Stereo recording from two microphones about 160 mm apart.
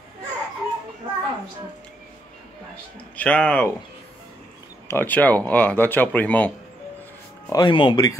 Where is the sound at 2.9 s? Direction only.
10° left (ahead or behind).